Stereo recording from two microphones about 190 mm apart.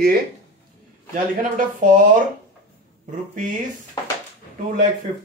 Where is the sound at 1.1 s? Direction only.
45° right (ahead or behind).